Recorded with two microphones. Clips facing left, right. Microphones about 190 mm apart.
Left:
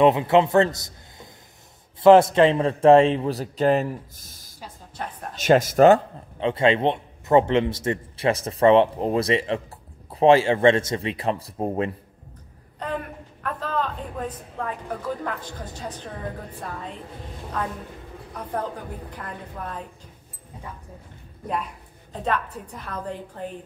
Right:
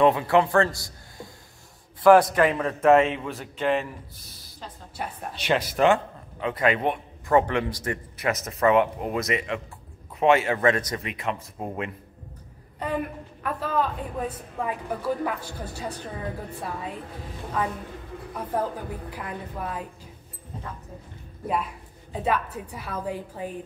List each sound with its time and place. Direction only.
0.0 s a man's voice: 20° left (ahead or behind); by 4.5 s 45° left (ahead or behind)
5.0 s a woman's voice: 10° right (ahead or behind)
5.3 s speech: 45° left (ahead or behind)
6.4 s a man's voice: 25° left (ahead or behind)
12.7 s a man's voice: 10° right (ahead or behind)
18.5 s a woman's voice: 5° right (ahead or behind)
22.1 s a woman's voice: 10° right (ahead or behind)